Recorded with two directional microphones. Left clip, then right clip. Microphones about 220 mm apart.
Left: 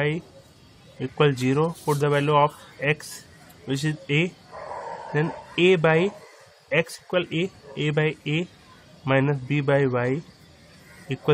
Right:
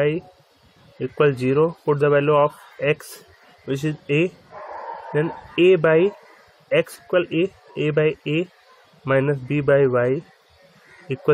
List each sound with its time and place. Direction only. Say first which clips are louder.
0.9 s speech: right 3 dB; 5° right (ahead or behind)